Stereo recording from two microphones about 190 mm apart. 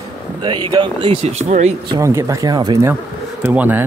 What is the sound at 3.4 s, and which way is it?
Speech, 10° right (ahead or behind).